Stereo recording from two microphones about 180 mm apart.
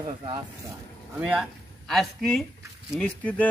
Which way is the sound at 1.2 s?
Centre (ahead or behind).